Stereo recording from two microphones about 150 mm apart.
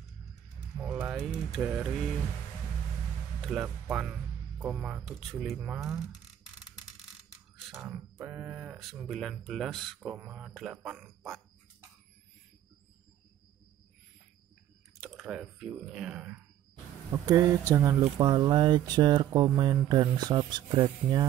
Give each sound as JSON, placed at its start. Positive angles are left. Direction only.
{"t": 0.7, "sound": "music", "side_deg": -10}
{"t": 1.2, "sound": "speech", "side_deg": -5}
{"t": 3.8, "sound": "speech", "side_deg": -5}
{"t": 5.0, "sound": "speech", "side_deg": 0}
{"t": 8.2, "sound": "speech", "side_deg": -10}
{"t": 9.9, "sound": "speech", "side_deg": -10}
{"t": 15.0, "sound": "speech", "side_deg": -5}
{"t": 17.1, "sound": "speech", "side_deg": -20}
{"t": 18.0, "sound": "speech", "side_deg": -30}